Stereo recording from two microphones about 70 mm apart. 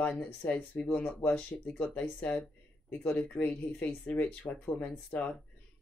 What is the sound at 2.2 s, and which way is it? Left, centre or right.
Speech, centre.